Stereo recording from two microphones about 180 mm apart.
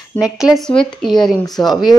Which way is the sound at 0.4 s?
Centre (ahead or behind).